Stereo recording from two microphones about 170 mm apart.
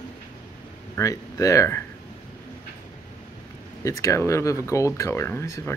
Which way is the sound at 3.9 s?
15° left (ahead or behind).